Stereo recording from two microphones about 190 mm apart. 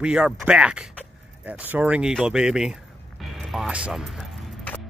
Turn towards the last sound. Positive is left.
turn(degrees=5)  # may be behind; listen again after turning